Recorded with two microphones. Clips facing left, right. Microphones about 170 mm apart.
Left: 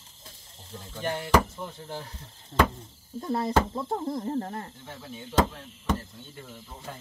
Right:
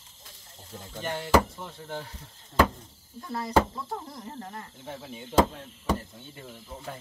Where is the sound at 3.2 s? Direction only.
25° left (ahead or behind).